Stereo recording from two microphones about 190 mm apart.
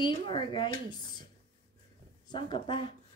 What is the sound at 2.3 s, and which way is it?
Speech, 25° left (ahead or behind).